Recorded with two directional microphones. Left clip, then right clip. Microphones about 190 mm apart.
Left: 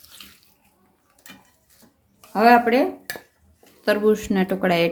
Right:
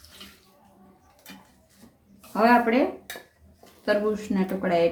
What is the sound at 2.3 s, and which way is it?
Speech, 45° left (ahead or behind).